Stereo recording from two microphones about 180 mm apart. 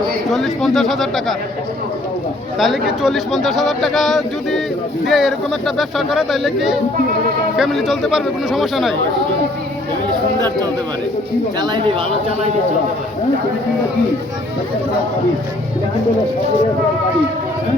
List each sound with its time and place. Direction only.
0.3 s speech: centre (ahead or behind)
2.6 s speech: centre (ahead or behind)
11.6 s speech: 25° right (ahead or behind)